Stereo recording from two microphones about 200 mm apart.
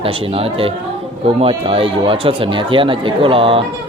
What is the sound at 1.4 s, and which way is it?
Speech, 25° right (ahead or behind).